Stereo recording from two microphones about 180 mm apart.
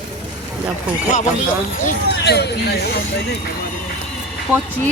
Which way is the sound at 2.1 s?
70° left (ahead or behind).